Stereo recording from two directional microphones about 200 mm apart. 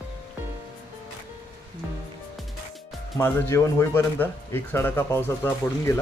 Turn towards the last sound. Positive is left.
turn(degrees=10)  # may be behind; listen again after turning